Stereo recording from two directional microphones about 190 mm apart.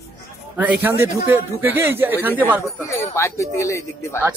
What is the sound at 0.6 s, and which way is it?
Speech, 10° right (ahead or behind).